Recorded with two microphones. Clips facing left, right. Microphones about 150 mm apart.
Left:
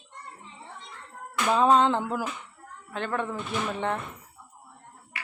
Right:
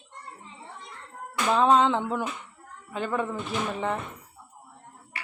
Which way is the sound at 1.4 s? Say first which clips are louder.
Even; centre (ahead or behind).